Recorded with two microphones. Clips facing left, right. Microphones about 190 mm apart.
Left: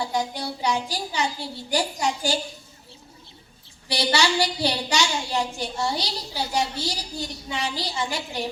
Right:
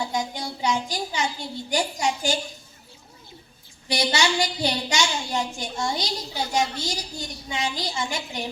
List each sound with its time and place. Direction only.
0.0 s a woman's voice: 35° left (ahead or behind)
3.8 s a woman's voice: 35° left (ahead or behind)